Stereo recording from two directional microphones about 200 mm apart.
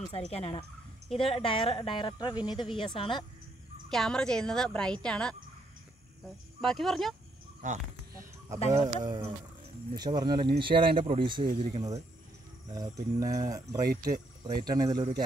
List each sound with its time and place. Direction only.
0.1 s speech: 30° left (ahead or behind)
3.9 s a woman's voice: 5° left (ahead or behind)
6.6 s a woman's voice: centre (ahead or behind)
8.8 s speech: 20° right (ahead or behind)